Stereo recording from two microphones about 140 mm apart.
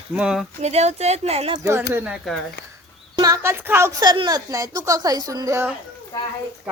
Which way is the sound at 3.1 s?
25° right (ahead or behind).